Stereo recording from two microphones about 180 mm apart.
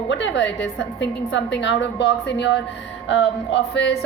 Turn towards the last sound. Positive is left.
turn(degrees=80)